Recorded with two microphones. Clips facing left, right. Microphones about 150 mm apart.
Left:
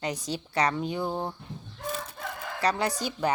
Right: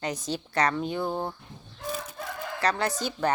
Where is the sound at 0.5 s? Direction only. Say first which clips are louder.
Right 1 dB; 10° left (ahead or behind).